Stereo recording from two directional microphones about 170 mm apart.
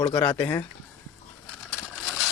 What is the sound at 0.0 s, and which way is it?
Speech, 20° left (ahead or behind).